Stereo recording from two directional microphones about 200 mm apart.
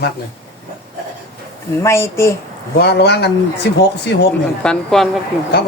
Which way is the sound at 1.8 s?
15° left (ahead or behind).